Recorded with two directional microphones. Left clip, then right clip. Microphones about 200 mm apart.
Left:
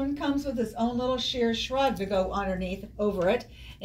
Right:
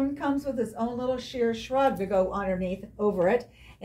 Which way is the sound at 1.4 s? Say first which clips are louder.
Right 3 dB; 15° right (ahead or behind).